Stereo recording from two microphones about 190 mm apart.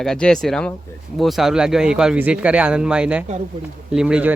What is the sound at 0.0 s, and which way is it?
A man's voice, 5° left (ahead or behind).